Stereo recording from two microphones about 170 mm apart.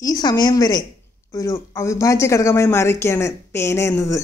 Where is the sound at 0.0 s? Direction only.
20° left (ahead or behind).